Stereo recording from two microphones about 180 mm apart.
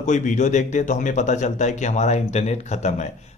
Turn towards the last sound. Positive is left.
turn(degrees=40)  # may be behind; listen again after turning